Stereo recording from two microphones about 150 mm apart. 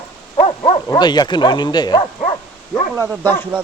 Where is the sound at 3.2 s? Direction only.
15° left (ahead or behind).